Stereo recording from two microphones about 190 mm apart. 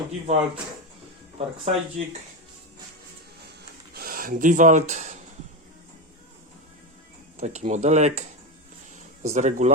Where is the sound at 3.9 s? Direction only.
50° right (ahead or behind).